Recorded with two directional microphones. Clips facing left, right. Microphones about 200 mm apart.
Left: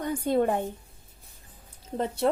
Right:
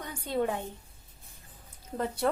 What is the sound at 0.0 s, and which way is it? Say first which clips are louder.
Speech: left 6 dB; 50° left (ahead or behind).